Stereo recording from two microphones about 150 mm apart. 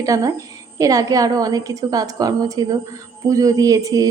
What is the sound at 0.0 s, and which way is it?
A woman's voice, 20° right (ahead or behind).